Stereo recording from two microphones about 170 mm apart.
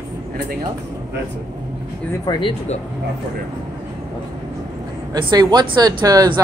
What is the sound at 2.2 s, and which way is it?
Speech, 25° left (ahead or behind).